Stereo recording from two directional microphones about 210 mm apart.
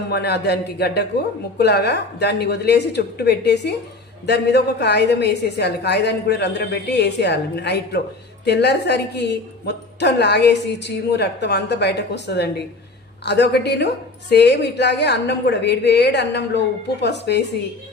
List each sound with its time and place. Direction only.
0.1 s a woman's voice: 50° left (ahead or behind)